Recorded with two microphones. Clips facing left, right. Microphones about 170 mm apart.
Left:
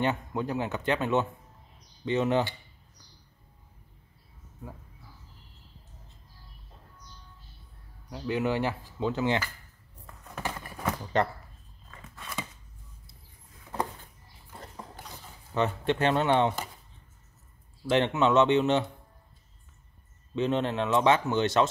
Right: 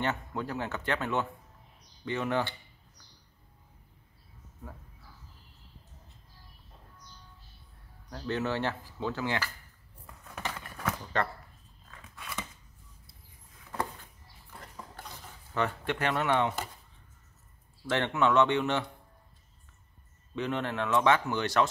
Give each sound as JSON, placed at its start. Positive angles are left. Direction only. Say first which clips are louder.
{"t": 0.0, "sound": "speech", "louder": "left 4 dB", "side_deg": 15}
{"t": 8.1, "sound": "speech", "louder": "left 3 dB", "side_deg": 15}
{"t": 10.3, "sound": "a sound", "louder": "left 3 dB", "side_deg": 5}
{"t": 14.5, "sound": "dog", "louder": "left 3 dB", "side_deg": 30}
{"t": 15.5, "sound": "speech", "louder": "left 4 dB", "side_deg": 25}
{"t": 17.8, "sound": "speech", "louder": "left 3 dB", "side_deg": 20}
{"t": 20.3, "sound": "speech", "louder": "left 5 dB", "side_deg": 20}